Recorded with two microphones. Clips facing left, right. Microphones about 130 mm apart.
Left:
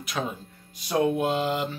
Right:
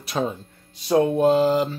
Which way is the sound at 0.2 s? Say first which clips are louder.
Right 6 dB; 30° right (ahead or behind).